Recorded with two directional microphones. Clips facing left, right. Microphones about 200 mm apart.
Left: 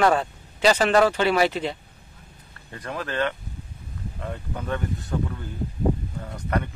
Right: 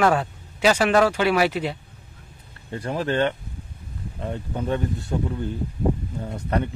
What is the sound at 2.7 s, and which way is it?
Speech, 30° right (ahead or behind).